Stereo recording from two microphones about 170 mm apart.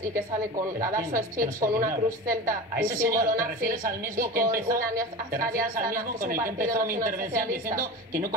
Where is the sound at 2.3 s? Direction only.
55° right (ahead or behind).